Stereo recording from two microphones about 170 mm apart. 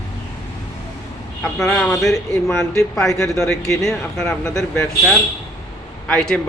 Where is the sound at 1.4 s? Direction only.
Centre (ahead or behind).